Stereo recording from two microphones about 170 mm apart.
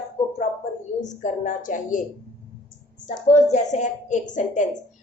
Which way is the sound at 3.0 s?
45° left (ahead or behind).